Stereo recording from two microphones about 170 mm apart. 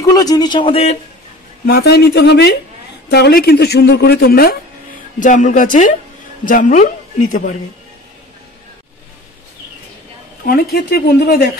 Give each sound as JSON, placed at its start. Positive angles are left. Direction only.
{"t": 0.0, "sound": "speech", "side_deg": 20}
{"t": 1.7, "sound": "speech", "side_deg": 70}
{"t": 5.2, "sound": "a woman's voice", "side_deg": 50}
{"t": 10.4, "sound": "speech", "side_deg": 60}